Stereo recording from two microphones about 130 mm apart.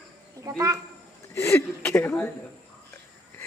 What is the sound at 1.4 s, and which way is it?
Speech, 20° left (ahead or behind).